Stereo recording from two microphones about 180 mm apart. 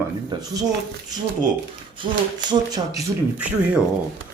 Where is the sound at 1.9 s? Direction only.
25° right (ahead or behind).